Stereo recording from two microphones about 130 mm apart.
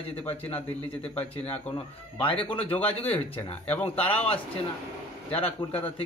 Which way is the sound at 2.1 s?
45° left (ahead or behind).